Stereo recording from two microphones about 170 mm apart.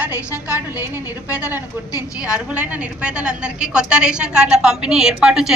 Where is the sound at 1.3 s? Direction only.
10° right (ahead or behind).